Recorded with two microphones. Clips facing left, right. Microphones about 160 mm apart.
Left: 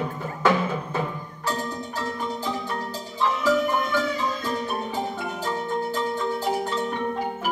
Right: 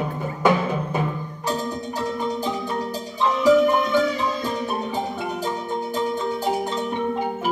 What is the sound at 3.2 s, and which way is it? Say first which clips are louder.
Music: right 6 dB; 20° right (ahead or behind).